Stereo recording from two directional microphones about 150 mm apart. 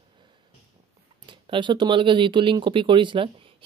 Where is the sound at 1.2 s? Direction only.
35° right (ahead or behind).